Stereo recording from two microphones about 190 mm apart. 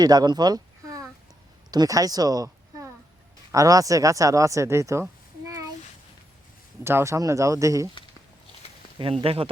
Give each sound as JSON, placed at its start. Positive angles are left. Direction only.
{"t": 0.0, "sound": "speech", "side_deg": -20}
{"t": 6.8, "sound": "speech", "side_deg": -15}
{"t": 9.2, "sound": "speech", "side_deg": -30}